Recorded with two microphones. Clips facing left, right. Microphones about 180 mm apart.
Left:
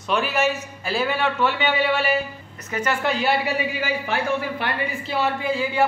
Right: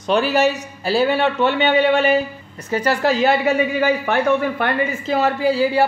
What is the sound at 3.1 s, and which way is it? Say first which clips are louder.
A man's voice: right 6 dB; 45° right (ahead or behind).